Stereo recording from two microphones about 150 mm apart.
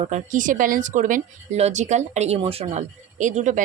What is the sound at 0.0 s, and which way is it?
Speech, 55° right (ahead or behind).